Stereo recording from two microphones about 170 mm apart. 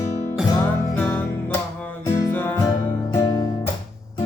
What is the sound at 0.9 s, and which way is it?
Music, 10° left (ahead or behind).